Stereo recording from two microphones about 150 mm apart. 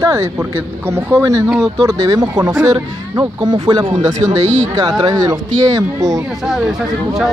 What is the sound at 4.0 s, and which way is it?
Speech, 50° right (ahead or behind).